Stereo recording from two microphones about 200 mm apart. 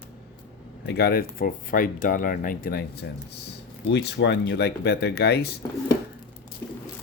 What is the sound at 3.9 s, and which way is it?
Speech, 60° left (ahead or behind).